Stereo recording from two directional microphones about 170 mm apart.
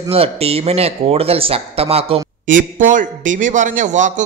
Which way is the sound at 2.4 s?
50° right (ahead or behind).